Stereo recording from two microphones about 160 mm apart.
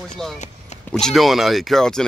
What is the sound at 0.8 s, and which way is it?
Speech, 5° left (ahead or behind).